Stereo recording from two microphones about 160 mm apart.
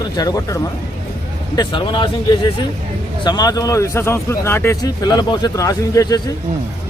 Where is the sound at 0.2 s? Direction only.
20° left (ahead or behind).